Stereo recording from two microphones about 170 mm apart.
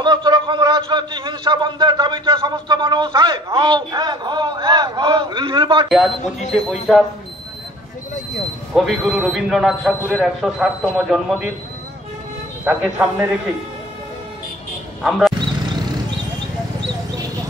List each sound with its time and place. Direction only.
0.0 s a man's voice: 25° right (ahead or behind)
6.5 s a man's voice: centre (ahead or behind)
8.7 s a man's voice: centre (ahead or behind)
12.6 s a man's voice: 10° right (ahead or behind)
15.0 s a man's voice: centre (ahead or behind)